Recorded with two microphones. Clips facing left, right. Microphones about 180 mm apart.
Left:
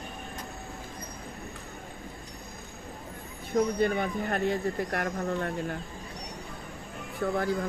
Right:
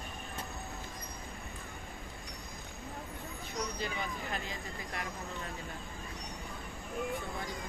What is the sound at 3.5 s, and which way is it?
Speech, 55° left (ahead or behind).